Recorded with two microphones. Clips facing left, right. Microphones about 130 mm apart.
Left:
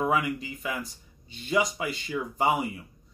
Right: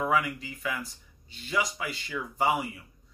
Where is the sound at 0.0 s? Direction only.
20° left (ahead or behind).